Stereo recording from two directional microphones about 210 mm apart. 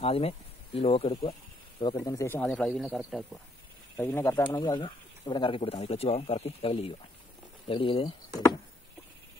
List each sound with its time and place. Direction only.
0.0 s speech: 30° left (ahead or behind); by 2.5 s 10° left (ahead or behind)
2.5 s speech: centre (ahead or behind)
3.9 s speech: 10° left (ahead or behind)